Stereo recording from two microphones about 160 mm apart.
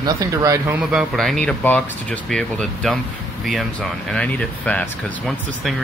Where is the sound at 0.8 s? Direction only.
5° right (ahead or behind).